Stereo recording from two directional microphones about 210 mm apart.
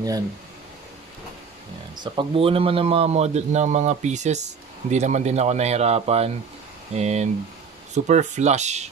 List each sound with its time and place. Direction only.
2.1 s a man's voice: 25° right (ahead or behind)